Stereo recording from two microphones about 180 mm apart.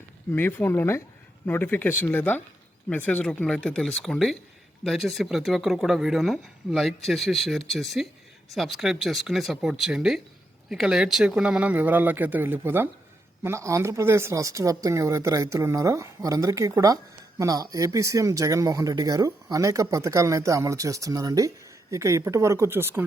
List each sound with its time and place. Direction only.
0.3 s speech: 10° left (ahead or behind); by 23.0 s 10° right (ahead or behind)